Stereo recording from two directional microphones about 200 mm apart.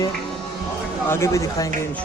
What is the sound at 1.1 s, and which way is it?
Speech, 15° left (ahead or behind).